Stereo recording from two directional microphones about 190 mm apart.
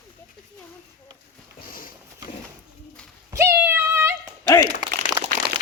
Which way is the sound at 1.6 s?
45° left (ahead or behind).